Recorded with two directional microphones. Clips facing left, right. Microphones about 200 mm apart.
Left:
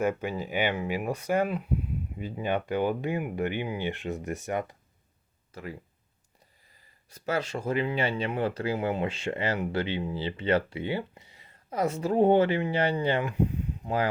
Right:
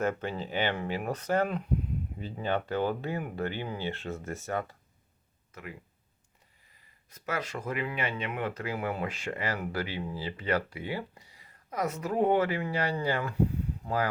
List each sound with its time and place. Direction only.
0.0 s speech: 10° left (ahead or behind)
5.5 s speech: 30° left (ahead or behind)
7.1 s speech: 30° left (ahead or behind)